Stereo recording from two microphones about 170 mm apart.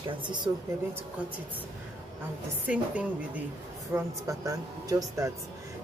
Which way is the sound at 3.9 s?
20° right (ahead or behind).